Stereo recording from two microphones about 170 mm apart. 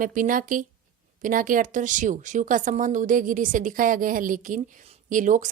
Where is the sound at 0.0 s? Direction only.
50° right (ahead or behind).